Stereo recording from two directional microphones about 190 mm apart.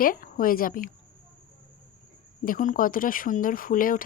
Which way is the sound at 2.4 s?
45° left (ahead or behind).